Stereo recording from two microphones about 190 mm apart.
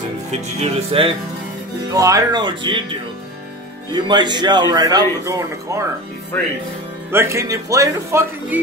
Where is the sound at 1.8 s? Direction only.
15° right (ahead or behind).